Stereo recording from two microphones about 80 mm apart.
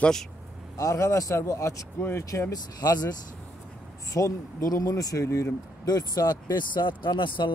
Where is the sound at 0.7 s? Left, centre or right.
Left.